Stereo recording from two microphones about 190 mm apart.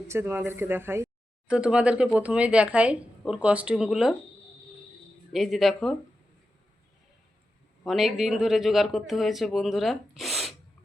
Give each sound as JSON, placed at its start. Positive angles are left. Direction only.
{"t": 0.1, "sound": "a woman's voice", "side_deg": -10}
{"t": 5.3, "sound": "speech", "side_deg": 0}
{"t": 7.9, "sound": "speech", "side_deg": 0}